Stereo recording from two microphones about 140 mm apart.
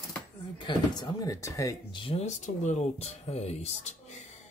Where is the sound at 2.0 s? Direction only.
50° left (ahead or behind).